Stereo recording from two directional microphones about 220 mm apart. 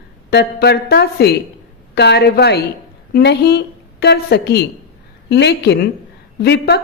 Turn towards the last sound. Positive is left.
turn(degrees=45)  # may be behind; listen again after turning